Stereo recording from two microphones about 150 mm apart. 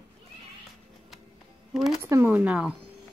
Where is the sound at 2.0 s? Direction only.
15° right (ahead or behind).